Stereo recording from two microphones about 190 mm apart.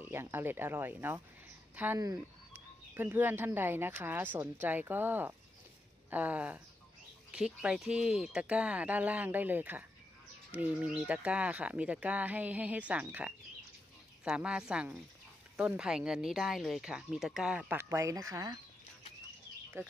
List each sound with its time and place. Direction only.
0.0 s speech: 10° right (ahead or behind)